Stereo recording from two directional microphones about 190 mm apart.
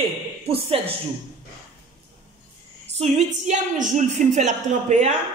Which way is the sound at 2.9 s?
35° right (ahead or behind).